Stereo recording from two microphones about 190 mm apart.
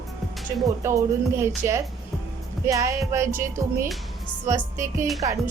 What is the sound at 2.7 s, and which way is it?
Music, 15° right (ahead or behind).